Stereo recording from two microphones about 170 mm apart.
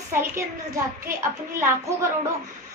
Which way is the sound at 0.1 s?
15° right (ahead or behind).